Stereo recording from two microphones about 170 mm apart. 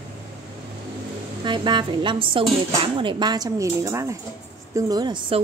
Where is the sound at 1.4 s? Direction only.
25° right (ahead or behind).